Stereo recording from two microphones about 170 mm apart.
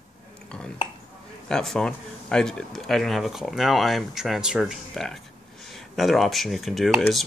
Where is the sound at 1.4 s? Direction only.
5° left (ahead or behind).